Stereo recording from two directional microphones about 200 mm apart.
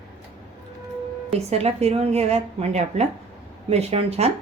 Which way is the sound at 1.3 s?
30° right (ahead or behind).